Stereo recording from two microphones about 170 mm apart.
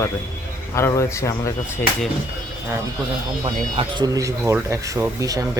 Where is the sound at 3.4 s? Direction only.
25° right (ahead or behind).